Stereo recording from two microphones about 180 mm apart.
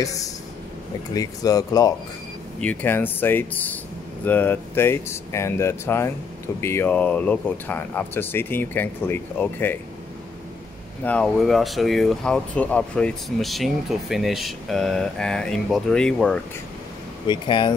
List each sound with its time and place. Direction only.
0.0 s speech: 20° left (ahead or behind)
2.6 s speech: 10° left (ahead or behind)
11.1 s speech: 5° left (ahead or behind)
17.3 s speech: 25° left (ahead or behind)